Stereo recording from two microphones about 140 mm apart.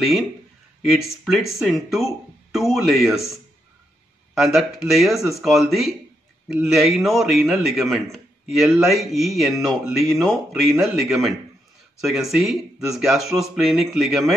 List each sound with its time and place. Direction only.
0.9 s a man's voice: centre (ahead or behind)
4.4 s a man's voice: centre (ahead or behind)